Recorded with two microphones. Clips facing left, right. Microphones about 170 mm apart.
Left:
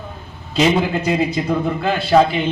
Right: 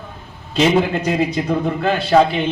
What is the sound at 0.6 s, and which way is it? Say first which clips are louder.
Speech: right 1 dB; 5° left (ahead or behind).